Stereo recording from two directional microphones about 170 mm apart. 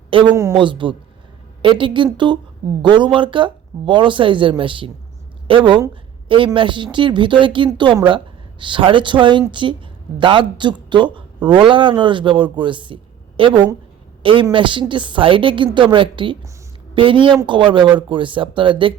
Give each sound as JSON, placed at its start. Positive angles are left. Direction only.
{"t": 0.1, "sound": "a man's voice", "side_deg": -30}